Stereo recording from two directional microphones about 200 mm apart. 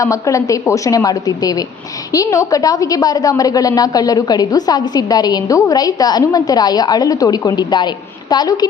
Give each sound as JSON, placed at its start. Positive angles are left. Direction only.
{"t": 0.0, "sound": "a woman's voice", "side_deg": 15}